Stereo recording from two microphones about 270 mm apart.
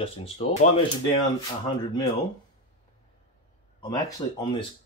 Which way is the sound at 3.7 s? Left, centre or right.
Centre.